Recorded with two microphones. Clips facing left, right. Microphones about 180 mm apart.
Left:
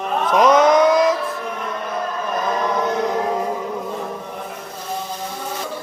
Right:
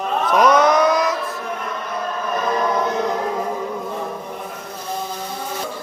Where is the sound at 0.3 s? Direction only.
20° left (ahead or behind).